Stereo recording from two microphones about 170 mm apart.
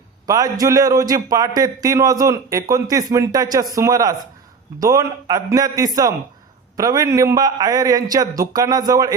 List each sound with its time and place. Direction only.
0.3 s a man's voice: 20° right (ahead or behind)